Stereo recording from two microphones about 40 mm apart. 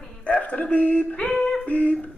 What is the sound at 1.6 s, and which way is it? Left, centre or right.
Humming, left.